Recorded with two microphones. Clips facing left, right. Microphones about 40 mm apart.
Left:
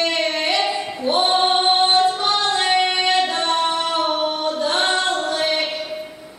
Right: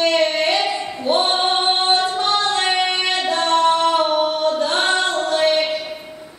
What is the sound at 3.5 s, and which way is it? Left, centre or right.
Singing, right.